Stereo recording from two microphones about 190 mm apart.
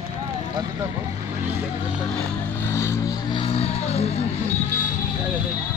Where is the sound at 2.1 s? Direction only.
10° left (ahead or behind).